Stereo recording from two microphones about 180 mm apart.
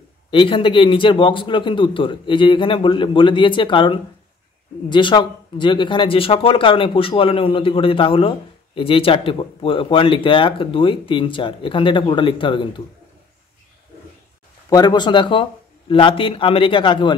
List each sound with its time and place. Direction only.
0.3 s speech: 30° left (ahead or behind)
14.7 s speech: 25° left (ahead or behind)